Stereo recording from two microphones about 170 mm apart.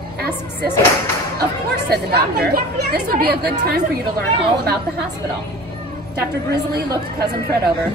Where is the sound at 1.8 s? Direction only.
70° right (ahead or behind).